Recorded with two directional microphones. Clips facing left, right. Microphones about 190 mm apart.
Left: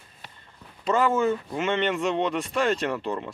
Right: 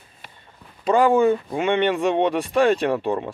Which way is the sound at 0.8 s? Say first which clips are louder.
Right 6 dB; 15° right (ahead or behind).